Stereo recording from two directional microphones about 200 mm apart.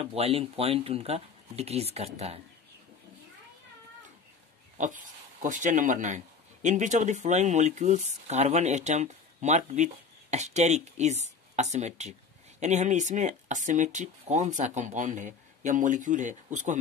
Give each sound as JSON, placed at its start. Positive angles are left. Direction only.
{"t": 0.0, "sound": "speech", "side_deg": -30}
{"t": 4.7, "sound": "speech", "side_deg": -40}